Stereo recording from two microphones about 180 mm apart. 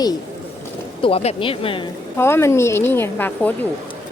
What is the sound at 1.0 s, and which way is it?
Speech, 35° left (ahead or behind).